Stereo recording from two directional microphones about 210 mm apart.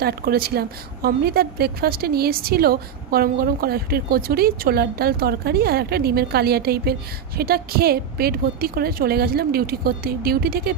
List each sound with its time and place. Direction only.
0.0 s a woman's voice: 45° right (ahead or behind)